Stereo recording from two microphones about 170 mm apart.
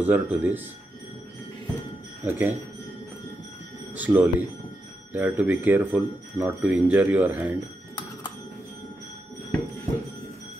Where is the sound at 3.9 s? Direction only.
10° right (ahead or behind).